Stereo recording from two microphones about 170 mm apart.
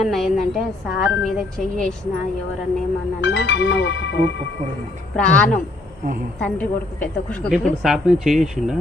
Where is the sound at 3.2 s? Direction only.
90° left.